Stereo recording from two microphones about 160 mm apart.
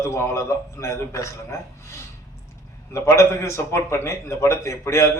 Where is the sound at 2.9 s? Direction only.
15° left (ahead or behind).